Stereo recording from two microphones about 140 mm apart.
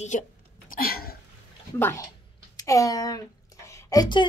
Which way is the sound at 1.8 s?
15° left (ahead or behind).